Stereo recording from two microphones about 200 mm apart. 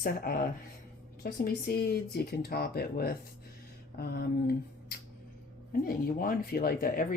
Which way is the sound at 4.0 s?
50° left (ahead or behind).